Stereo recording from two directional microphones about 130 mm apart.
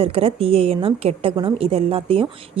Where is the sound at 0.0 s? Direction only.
50° right (ahead or behind).